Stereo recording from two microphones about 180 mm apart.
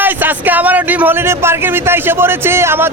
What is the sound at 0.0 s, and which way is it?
A man's voice, 10° right (ahead or behind).